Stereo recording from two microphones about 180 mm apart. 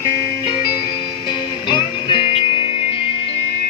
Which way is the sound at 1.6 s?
25° left (ahead or behind).